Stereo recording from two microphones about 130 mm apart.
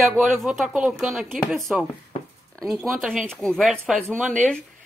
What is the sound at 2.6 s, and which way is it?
A woman's voice, centre (ahead or behind).